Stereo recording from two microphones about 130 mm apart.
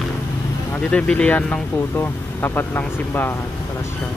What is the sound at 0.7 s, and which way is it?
Speech, 10° left (ahead or behind).